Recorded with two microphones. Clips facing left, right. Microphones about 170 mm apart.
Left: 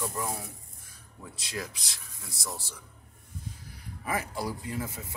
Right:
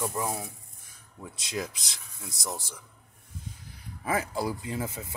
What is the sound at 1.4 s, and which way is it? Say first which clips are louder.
Speech: right 4 dB; 20° right (ahead or behind).